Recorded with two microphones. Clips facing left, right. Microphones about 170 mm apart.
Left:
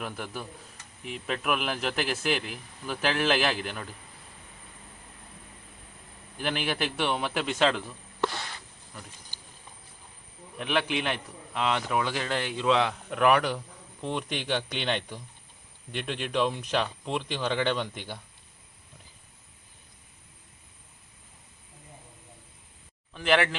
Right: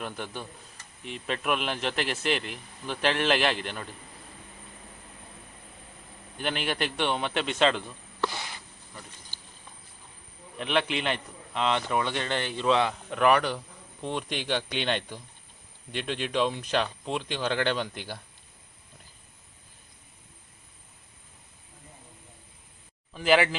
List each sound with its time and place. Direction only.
0.0 s a man's voice: 5° left (ahead or behind)
6.3 s a man's voice: centre (ahead or behind)
8.3 s a sound: 10° right (ahead or behind)
10.6 s a man's voice: centre (ahead or behind)
23.1 s a man's voice: 5° right (ahead or behind)